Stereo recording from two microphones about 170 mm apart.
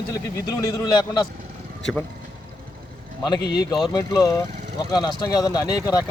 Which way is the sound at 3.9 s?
20° left (ahead or behind).